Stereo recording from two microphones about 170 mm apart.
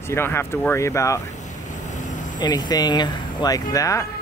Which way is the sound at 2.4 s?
25° left (ahead or behind).